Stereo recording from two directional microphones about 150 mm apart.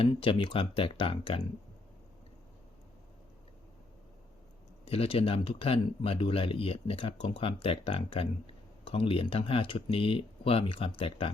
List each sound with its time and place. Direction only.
0.0 s speech: 35° left (ahead or behind)
4.9 s speech: 40° left (ahead or behind)